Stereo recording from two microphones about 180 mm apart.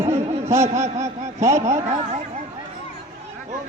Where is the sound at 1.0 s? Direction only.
15° right (ahead or behind).